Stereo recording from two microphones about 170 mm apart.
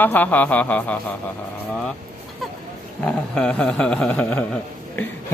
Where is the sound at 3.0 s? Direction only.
5° left (ahead or behind).